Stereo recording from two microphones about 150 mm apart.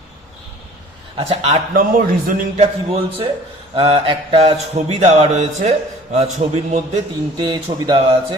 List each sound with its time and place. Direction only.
1.1 s mantra: 45° right (ahead or behind)
1.7 s a man's voice: 70° right (ahead or behind)
2.6 s mantra: 45° right (ahead or behind)
7.3 s speech: 30° right (ahead or behind)